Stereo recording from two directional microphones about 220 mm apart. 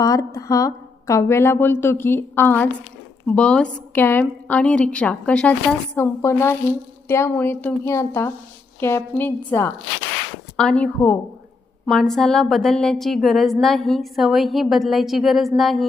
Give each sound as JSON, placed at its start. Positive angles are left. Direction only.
{"t": 0.0, "sound": "a woman's voice", "side_deg": 15}